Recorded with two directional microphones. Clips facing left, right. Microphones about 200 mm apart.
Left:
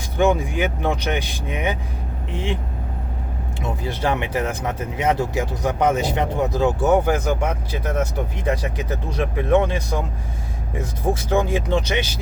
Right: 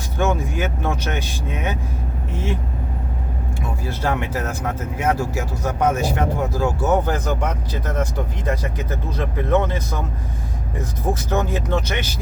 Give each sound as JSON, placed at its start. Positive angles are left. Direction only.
{"t": 0.2, "sound": "speech", "side_deg": 15}
{"t": 3.6, "sound": "speech", "side_deg": 20}